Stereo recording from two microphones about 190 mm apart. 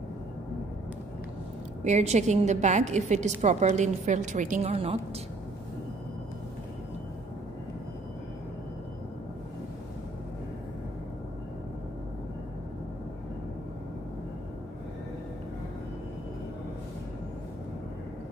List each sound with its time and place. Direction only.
1.9 s a woman's voice: 35° right (ahead or behind)
4.6 s a woman's voice: 30° right (ahead or behind)